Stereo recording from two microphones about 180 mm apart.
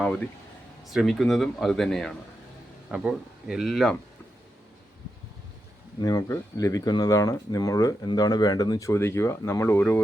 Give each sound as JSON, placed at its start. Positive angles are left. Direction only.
{"t": 0.9, "sound": "speech", "side_deg": 0}
{"t": 6.0, "sound": "speech", "side_deg": 20}